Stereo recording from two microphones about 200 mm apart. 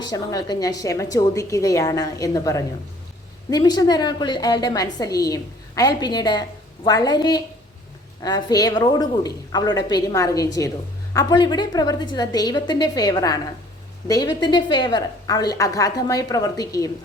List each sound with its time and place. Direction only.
0.0 s a woman's voice: 20° left (ahead or behind)